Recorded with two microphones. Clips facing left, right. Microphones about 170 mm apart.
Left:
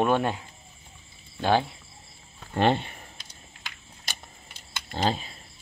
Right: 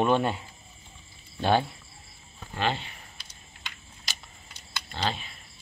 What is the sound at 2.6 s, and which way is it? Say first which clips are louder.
Speech: left 6 dB; 50° left (ahead or behind).